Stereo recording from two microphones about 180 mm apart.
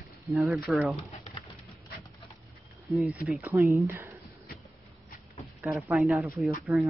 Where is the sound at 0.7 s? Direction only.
Centre (ahead or behind).